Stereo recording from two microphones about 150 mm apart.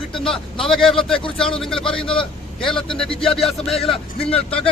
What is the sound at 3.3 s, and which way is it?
Speech, centre (ahead or behind).